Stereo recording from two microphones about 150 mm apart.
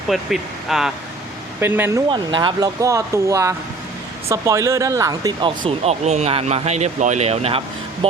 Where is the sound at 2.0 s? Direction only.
30° right (ahead or behind).